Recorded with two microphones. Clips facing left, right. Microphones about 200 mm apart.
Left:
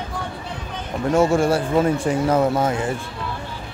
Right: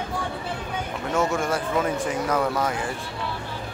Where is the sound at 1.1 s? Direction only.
30° left (ahead or behind).